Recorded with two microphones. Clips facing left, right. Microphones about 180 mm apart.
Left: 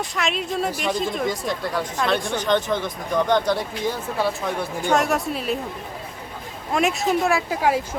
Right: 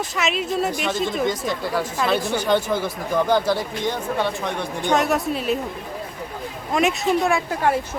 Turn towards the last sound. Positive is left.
turn(degrees=5)  # may be behind; listen again after turning